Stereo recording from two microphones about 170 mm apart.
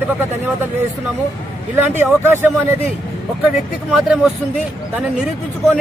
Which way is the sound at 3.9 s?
5° right (ahead or behind).